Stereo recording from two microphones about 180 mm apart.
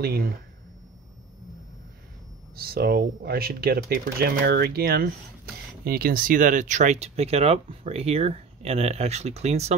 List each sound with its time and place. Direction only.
0.0 s speech: 60° right (ahead or behind)
2.5 s speech: 55° right (ahead or behind); by 9.8 s 35° right (ahead or behind)